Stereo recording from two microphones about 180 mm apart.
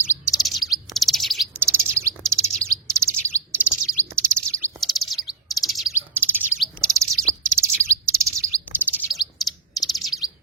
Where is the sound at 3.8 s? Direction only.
5° left (ahead or behind).